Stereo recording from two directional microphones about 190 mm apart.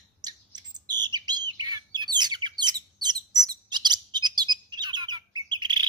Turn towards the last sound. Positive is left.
turn(degrees=-25)  # may be behind; listen again after turning